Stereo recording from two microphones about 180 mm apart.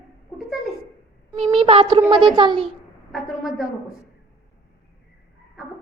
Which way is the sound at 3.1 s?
Centre (ahead or behind).